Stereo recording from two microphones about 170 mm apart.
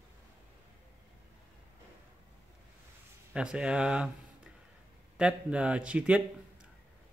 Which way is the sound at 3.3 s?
5° right (ahead or behind).